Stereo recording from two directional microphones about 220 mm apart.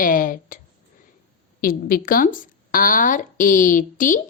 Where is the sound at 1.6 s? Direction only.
40° left (ahead or behind).